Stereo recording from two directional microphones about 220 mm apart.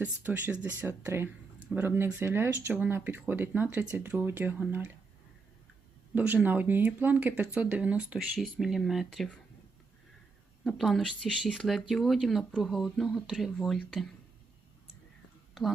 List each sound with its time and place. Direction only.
0.0 s speech: 10° right (ahead or behind)
6.1 s speech: 10° right (ahead or behind)
10.6 s speech: centre (ahead or behind)